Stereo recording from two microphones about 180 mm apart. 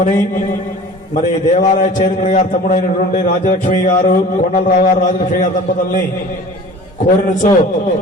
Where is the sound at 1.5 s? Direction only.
45° left (ahead or behind).